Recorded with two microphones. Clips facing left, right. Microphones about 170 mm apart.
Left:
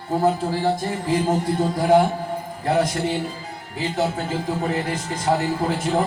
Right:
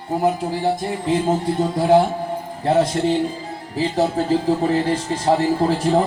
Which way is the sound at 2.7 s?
25° right (ahead or behind).